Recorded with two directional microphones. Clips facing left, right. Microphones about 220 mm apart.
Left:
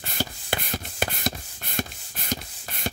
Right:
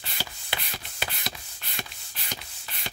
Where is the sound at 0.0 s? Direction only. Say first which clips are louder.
Left 8 dB; 45° left (ahead or behind).